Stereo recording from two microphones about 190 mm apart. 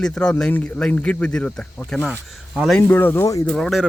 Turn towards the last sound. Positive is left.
turn(degrees=0)  # may be behind; listen again after turning